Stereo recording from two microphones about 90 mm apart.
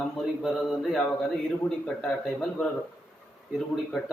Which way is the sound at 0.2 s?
Centre (ahead or behind).